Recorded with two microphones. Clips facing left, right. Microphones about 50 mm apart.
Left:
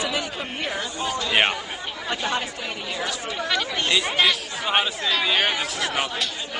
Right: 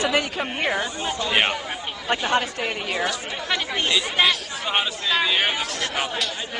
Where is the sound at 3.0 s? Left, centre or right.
Right.